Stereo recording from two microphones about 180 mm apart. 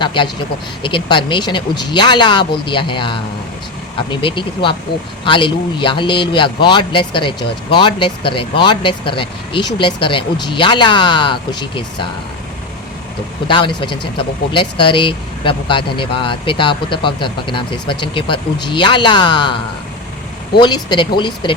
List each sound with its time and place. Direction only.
0.0 s speech: 25° left (ahead or behind)
13.5 s speech: 25° left (ahead or behind)
20.6 s speech: 25° left (ahead or behind)